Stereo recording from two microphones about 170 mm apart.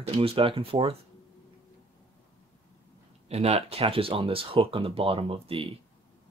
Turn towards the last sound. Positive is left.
turn(degrees=-35)  # may be behind; listen again after turning